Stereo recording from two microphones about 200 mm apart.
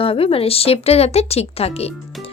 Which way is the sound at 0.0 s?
30° left (ahead or behind).